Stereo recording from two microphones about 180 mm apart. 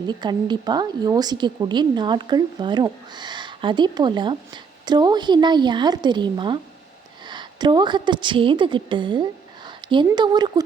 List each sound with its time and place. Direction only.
0.1 s a woman's voice: 25° right (ahead or behind)